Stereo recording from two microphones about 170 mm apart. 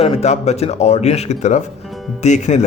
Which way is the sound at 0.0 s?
40° left (ahead or behind).